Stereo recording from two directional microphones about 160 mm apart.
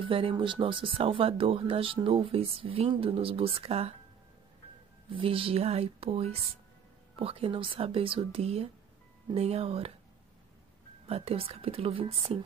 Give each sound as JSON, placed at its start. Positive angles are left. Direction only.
{"t": 0.0, "sound": "speech", "side_deg": -35}
{"t": 5.1, "sound": "speech", "side_deg": -35}
{"t": 11.1, "sound": "speech", "side_deg": -35}